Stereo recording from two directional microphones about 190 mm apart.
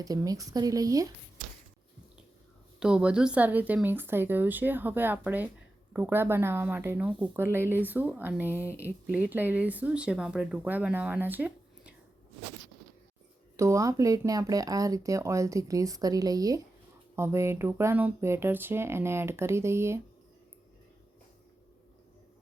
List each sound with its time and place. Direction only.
0.0 s speech: 20° right (ahead or behind)
2.8 s speech: 5° right (ahead or behind)
13.6 s speech: 15° right (ahead or behind)